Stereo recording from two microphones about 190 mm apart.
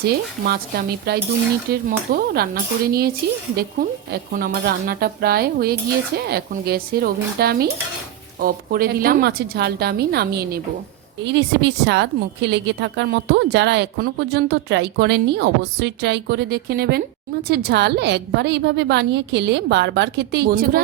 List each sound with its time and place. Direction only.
0.4 s a woman's voice: 55° right (ahead or behind)
3.5 s a woman's voice: 55° right (ahead or behind)